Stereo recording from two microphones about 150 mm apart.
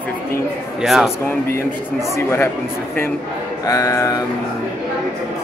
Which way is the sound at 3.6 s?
20° left (ahead or behind).